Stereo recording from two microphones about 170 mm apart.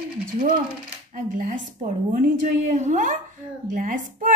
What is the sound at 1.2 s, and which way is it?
A woman's voice, 50° right (ahead or behind).